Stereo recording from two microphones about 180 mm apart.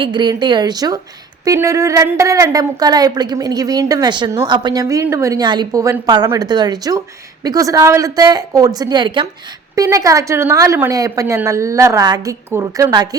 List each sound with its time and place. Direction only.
0.0 s a woman's voice: 25° right (ahead or behind)